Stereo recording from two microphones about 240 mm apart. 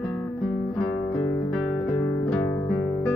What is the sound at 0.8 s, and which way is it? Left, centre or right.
Guitar, centre.